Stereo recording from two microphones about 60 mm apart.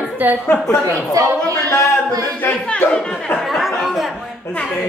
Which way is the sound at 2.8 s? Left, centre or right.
Left.